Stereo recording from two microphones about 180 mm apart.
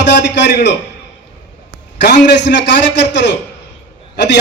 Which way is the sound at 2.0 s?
70° left (ahead or behind).